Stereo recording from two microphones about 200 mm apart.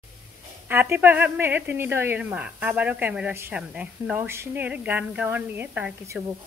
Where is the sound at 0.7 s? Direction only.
10° right (ahead or behind).